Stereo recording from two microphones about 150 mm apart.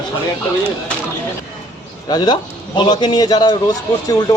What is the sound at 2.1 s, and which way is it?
A man's voice, 30° left (ahead or behind).